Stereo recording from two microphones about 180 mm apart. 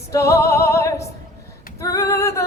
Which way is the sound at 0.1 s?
15° left (ahead or behind).